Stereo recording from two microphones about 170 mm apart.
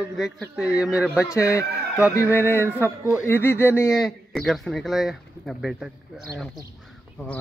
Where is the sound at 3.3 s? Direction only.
15° left (ahead or behind).